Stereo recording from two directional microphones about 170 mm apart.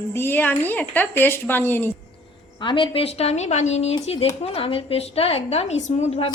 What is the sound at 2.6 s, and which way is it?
Speech, 30° left (ahead or behind).